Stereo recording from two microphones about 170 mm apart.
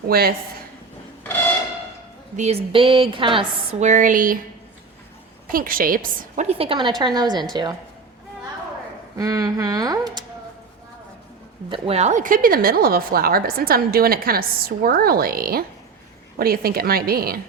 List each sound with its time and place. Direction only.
0.1 s a woman's voice: 60° right (ahead or behind)
2.3 s a woman's voice: 40° right (ahead or behind)
3.8 s a woman's voice: 50° right (ahead or behind)
5.5 s a woman's voice: 55° right (ahead or behind); by 7.8 s 25° right (ahead or behind)
9.1 s speech: 20° right (ahead or behind)
11.7 s a woman's voice: 35° right (ahead or behind); by 17.4 s 60° right (ahead or behind)